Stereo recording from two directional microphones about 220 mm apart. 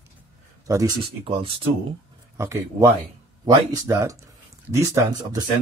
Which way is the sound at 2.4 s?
10° right (ahead or behind).